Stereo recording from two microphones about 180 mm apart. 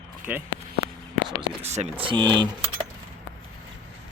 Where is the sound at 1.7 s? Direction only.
40° right (ahead or behind).